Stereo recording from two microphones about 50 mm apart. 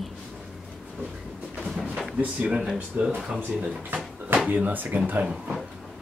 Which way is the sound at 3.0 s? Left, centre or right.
Right.